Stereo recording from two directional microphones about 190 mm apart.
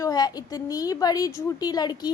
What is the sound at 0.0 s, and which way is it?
A woman's voice, 20° left (ahead or behind).